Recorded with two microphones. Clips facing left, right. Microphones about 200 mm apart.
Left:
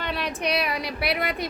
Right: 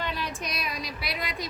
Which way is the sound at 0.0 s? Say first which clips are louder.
Left 5 dB; 65° left (ahead or behind).